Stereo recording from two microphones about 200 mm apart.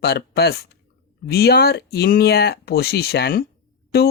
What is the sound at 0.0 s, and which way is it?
Speech, 55° left (ahead or behind).